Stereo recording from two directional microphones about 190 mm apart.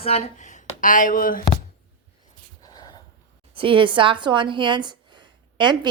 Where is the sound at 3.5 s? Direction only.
25° right (ahead or behind).